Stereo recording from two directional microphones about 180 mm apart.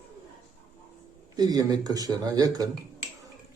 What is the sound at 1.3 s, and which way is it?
Speech, 20° right (ahead or behind).